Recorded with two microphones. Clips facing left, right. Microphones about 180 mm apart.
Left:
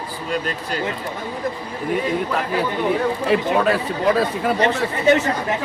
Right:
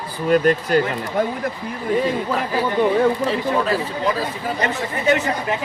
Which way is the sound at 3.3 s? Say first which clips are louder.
Left 2 dB; 65° left (ahead or behind).